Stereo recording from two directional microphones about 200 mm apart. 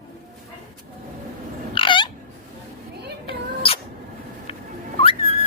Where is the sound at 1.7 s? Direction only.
25° left (ahead or behind).